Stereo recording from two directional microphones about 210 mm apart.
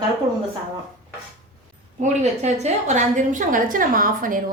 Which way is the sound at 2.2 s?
35° right (ahead or behind).